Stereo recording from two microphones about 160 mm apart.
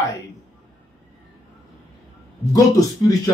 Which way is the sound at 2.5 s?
20° left (ahead or behind).